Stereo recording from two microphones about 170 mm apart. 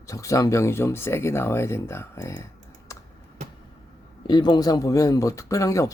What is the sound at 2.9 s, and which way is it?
Computer keyboard, 15° left (ahead or behind).